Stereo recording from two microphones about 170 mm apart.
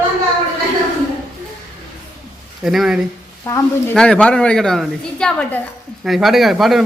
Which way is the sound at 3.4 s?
15° left (ahead or behind).